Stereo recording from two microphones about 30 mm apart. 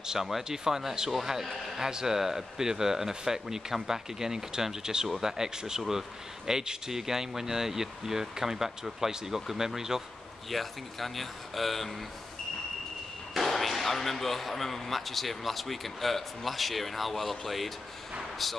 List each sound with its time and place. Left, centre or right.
0.4 s speech: centre
10.5 s speech: centre
13.4 s speech: centre